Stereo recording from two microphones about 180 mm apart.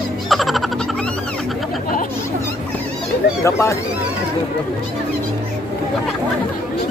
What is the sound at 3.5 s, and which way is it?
Speech, 15° left (ahead or behind).